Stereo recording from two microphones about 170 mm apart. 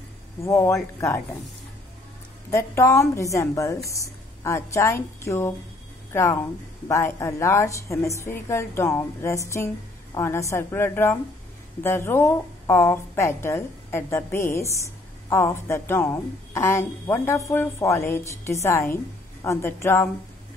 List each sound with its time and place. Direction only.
0.4 s a woman's voice: 15° left (ahead or behind)
2.5 s a woman's voice: 15° left (ahead or behind)